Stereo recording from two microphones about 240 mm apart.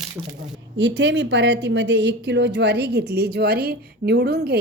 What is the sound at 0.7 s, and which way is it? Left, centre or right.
Speech, right.